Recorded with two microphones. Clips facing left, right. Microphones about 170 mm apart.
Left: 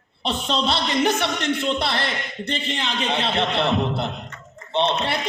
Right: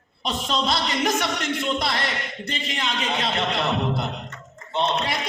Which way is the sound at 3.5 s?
30° left (ahead or behind).